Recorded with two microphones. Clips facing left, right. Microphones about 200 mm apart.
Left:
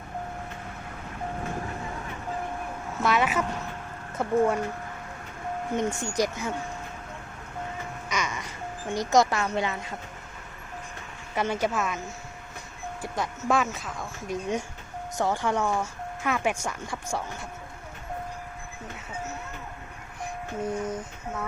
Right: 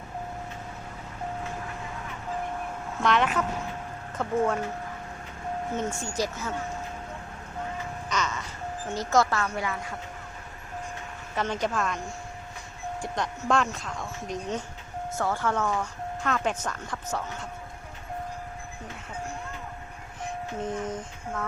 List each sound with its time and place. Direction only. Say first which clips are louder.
3.0 s speech: even; 5° left (ahead or behind)
5.7 s speech: left 5 dB; 15° left (ahead or behind)
8.1 s music: right 1 dB; 10° left (ahead or behind)
8.9 s speech: left 2 dB; 15° left (ahead or behind)
11.3 s speech: left 1 dB; 10° left (ahead or behind)
15.1 s speech: left 2 dB; 15° left (ahead or behind)
20.2 s music: left 1 dB; 10° left (ahead or behind)